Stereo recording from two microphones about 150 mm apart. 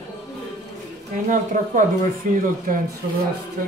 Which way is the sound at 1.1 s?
55° right (ahead or behind).